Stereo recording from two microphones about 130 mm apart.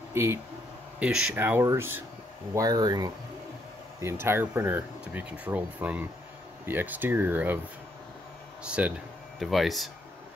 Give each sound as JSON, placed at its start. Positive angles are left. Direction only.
{"t": 0.1, "sound": "speech", "side_deg": -20}
{"t": 0.9, "sound": "speech", "side_deg": -5}
{"t": 2.5, "sound": "speech", "side_deg": -30}
{"t": 4.0, "sound": "speech", "side_deg": -20}
{"t": 8.6, "sound": "speech", "side_deg": -10}